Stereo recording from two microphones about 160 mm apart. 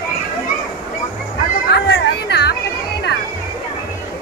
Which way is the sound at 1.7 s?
90° left.